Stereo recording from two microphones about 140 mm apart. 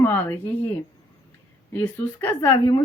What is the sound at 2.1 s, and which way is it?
Speech, 10° left (ahead or behind).